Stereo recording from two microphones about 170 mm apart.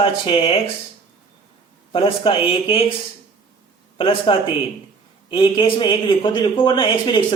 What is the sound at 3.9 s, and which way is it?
A man's voice, 30° left (ahead or behind).